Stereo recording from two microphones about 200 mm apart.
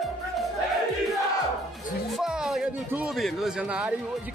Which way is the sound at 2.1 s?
Centre (ahead or behind).